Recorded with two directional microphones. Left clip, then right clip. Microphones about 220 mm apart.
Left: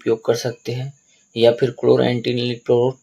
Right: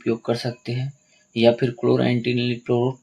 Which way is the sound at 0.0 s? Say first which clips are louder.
Left 5 dB; 25° left (ahead or behind).